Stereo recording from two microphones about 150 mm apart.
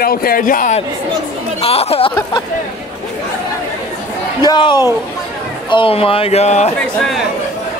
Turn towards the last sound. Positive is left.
turn(degrees=0)  # may be behind; listen again after turning